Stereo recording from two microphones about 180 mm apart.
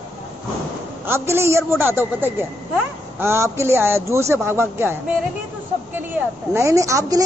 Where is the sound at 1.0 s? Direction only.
15° right (ahead or behind).